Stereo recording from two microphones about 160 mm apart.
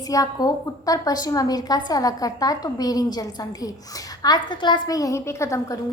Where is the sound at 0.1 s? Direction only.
25° left (ahead or behind).